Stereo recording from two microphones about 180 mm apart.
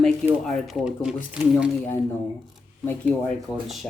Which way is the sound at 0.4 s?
Centre (ahead or behind).